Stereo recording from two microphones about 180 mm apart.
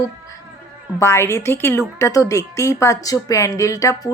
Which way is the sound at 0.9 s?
15° left (ahead or behind).